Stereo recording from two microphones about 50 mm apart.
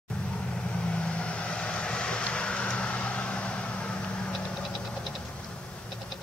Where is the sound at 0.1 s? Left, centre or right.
Left.